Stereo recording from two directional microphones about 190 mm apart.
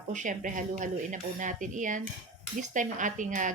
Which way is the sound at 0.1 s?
40° right (ahead or behind).